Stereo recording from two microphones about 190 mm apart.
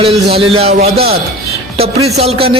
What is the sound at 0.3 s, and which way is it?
A man's voice, 30° right (ahead or behind).